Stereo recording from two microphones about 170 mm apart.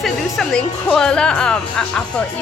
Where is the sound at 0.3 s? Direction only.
5° left (ahead or behind).